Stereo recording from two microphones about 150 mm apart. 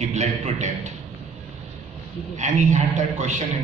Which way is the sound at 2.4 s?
50° right (ahead or behind).